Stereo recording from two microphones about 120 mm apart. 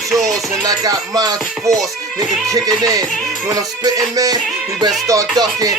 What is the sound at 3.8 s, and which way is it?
Speech, 30° right (ahead or behind).